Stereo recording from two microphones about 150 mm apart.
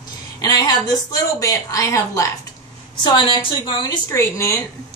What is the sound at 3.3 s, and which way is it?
A woman's voice, 30° left (ahead or behind).